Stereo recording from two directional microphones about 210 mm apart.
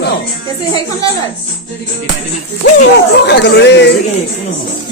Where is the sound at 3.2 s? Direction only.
55° left (ahead or behind).